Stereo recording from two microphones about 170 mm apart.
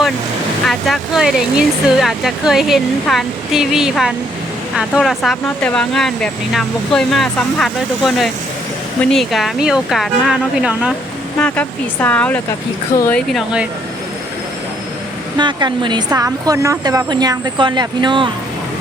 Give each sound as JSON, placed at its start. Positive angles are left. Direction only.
{"t": 0.7, "sound": "speech", "side_deg": 0}
{"t": 11.3, "sound": "speech", "side_deg": 10}
{"t": 15.4, "sound": "a woman's voice", "side_deg": -25}